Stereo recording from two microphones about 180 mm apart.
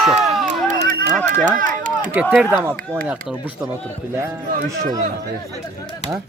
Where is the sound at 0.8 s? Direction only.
50° right (ahead or behind).